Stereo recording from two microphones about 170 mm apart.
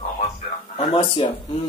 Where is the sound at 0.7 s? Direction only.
30° left (ahead or behind).